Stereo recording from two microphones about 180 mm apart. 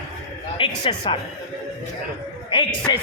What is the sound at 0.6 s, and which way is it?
Speech, 30° left (ahead or behind).